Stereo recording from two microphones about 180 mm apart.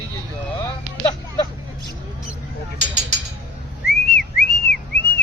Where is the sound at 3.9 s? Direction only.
60° left (ahead or behind).